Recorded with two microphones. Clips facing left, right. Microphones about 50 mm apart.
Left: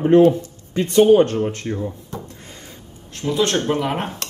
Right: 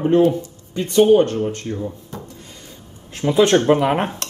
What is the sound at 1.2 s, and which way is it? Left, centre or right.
Speech, left.